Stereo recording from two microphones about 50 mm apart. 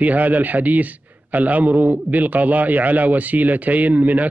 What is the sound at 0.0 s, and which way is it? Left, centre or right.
A man's voice, right.